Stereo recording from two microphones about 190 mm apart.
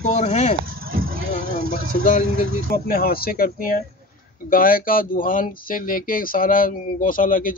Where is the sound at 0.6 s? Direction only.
50° right (ahead or behind).